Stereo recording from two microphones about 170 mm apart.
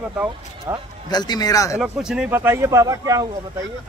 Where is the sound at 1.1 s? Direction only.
25° left (ahead or behind).